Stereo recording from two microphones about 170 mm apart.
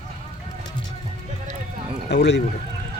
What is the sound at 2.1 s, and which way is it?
Speech, 85° left.